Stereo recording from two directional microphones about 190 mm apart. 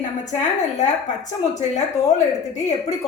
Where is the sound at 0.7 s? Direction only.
40° left (ahead or behind).